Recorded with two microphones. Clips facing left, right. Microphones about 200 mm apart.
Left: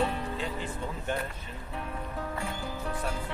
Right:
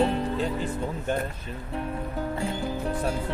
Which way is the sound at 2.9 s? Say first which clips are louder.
Right 6 dB; 35° right (ahead or behind).